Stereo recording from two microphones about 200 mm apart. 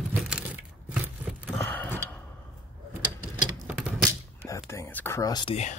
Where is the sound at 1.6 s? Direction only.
10° left (ahead or behind).